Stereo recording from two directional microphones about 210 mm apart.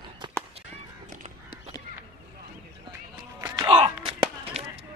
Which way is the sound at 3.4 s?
25° right (ahead or behind).